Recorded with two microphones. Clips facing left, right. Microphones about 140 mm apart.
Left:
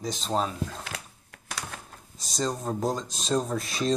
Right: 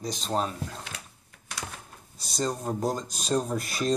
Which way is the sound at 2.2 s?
Centre (ahead or behind).